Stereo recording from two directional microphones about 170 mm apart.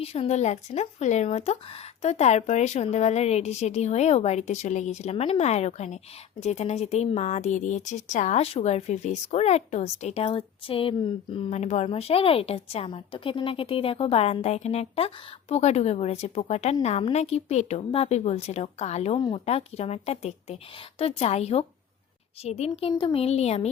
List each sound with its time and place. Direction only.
0.0 s speech: 35° left (ahead or behind)
19.1 s speech: 30° left (ahead or behind)